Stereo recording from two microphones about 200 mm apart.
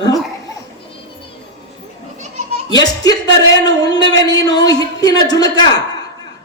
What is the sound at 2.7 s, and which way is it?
Speech, 20° left (ahead or behind).